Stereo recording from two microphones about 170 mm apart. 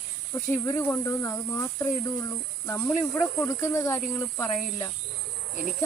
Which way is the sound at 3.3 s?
15° left (ahead or behind).